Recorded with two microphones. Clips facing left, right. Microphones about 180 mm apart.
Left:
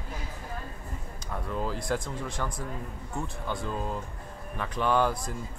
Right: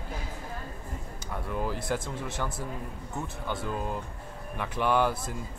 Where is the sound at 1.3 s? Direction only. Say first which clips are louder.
Even; 10° right (ahead or behind).